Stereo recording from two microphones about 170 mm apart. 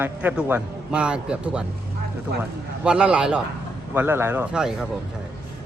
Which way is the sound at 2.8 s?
5° right (ahead or behind).